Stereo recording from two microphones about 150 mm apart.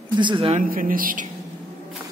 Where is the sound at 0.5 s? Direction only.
65° right (ahead or behind).